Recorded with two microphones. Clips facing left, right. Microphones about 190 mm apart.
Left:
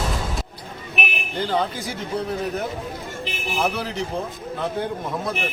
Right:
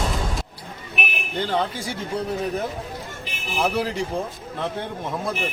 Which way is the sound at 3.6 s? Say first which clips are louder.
Right 2 dB; centre (ahead or behind).